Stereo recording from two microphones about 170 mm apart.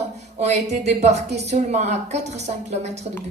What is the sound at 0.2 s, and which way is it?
A woman's voice, 40° right (ahead or behind).